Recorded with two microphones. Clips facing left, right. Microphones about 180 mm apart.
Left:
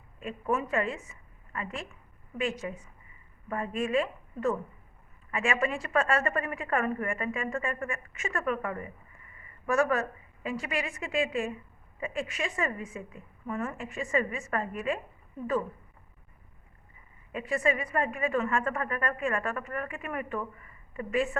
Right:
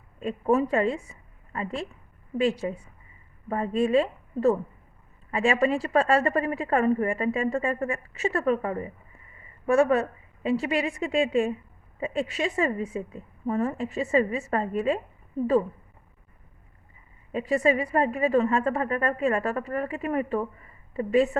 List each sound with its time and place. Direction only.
0.2 s a woman's voice: 30° right (ahead or behind)
17.3 s a woman's voice: 35° right (ahead or behind)